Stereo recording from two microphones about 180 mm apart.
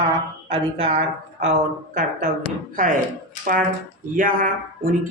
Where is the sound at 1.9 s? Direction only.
50° right (ahead or behind).